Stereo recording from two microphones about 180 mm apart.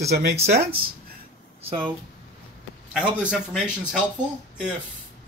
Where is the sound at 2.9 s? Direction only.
5° right (ahead or behind).